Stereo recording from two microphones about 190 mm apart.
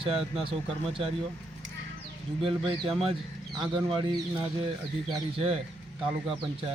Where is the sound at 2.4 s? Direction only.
30° right (ahead or behind).